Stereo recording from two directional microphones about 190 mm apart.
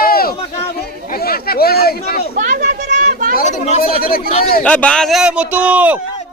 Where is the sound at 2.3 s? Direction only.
40° right (ahead or behind).